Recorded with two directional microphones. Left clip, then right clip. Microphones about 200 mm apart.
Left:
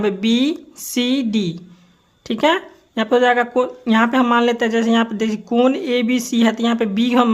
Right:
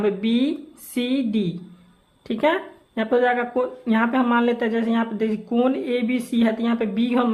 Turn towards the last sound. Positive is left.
turn(degrees=35)  # may be behind; listen again after turning